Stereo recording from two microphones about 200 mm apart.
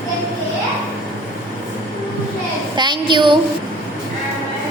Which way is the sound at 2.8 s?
25° right (ahead or behind).